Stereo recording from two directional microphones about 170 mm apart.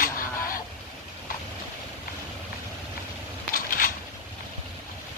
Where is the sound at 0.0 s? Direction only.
55° left (ahead or behind).